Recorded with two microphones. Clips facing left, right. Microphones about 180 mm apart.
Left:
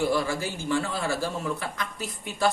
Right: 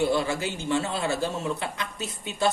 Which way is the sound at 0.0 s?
20° right (ahead or behind).